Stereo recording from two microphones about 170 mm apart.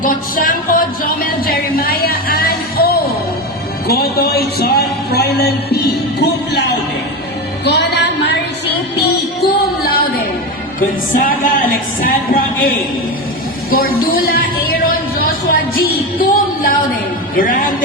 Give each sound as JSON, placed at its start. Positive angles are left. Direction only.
{"t": 0.0, "sound": "speech", "side_deg": 55}
{"t": 1.5, "sound": "music", "side_deg": 60}
{"t": 3.8, "sound": "a sound", "side_deg": 65}
{"t": 9.0, "sound": "music", "side_deg": 65}
{"t": 10.8, "sound": "speech", "side_deg": 55}
{"t": 13.7, "sound": "a sound", "side_deg": 60}